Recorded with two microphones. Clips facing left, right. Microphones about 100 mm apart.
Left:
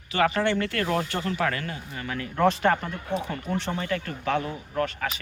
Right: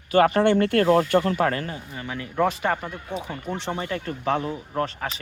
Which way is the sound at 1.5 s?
35° right (ahead or behind).